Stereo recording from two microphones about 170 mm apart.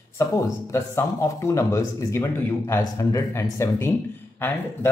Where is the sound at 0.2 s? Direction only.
15° left (ahead or behind).